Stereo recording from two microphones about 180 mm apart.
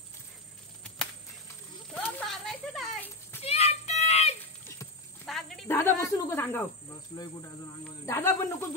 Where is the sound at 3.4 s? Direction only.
35° left (ahead or behind).